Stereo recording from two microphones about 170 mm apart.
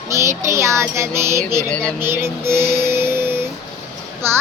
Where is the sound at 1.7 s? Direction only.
5° left (ahead or behind).